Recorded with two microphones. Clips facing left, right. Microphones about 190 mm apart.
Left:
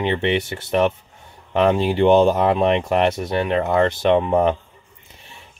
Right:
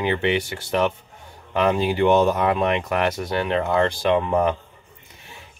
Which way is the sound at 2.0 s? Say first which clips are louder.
Left 4 dB; 30° left (ahead or behind).